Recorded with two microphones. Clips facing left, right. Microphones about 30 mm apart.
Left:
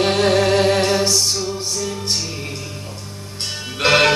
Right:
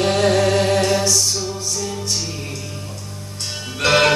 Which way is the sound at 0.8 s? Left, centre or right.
Left.